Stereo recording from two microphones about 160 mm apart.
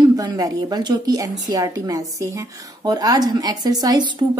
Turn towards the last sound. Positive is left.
turn(degrees=-25)  # may be behind; listen again after turning